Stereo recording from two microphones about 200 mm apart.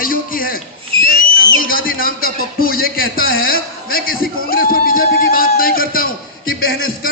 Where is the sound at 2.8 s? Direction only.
45° left (ahead or behind).